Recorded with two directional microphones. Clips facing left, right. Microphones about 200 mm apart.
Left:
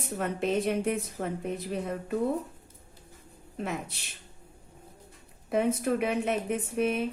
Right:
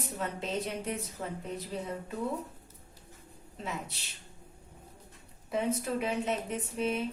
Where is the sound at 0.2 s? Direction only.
60° left (ahead or behind).